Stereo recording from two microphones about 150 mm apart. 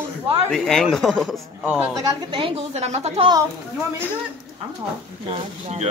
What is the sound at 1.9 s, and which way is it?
A woman's voice, 35° right (ahead or behind).